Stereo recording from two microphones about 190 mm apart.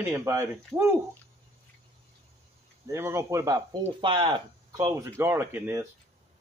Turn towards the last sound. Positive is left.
turn(degrees=-10)  # may be behind; listen again after turning